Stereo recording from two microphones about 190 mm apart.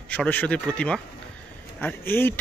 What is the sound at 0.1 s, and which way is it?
Speech, 5° left (ahead or behind).